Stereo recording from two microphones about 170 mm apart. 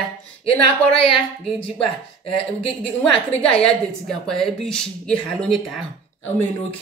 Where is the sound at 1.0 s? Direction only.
5° left (ahead or behind).